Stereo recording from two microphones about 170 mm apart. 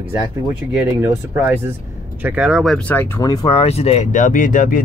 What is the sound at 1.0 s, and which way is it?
Speech, 15° right (ahead or behind).